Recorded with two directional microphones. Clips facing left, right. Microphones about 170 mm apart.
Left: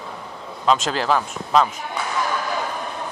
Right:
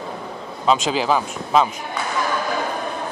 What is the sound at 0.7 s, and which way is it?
Speech, 5° right (ahead or behind).